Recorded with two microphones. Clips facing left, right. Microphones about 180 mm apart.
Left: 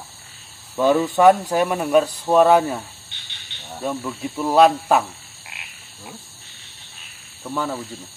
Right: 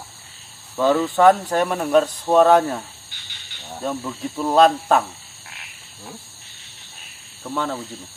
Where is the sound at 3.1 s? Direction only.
25° left (ahead or behind).